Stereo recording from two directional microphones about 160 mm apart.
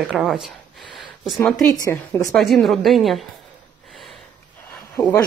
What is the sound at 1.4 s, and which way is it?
Speech, 5° left (ahead or behind).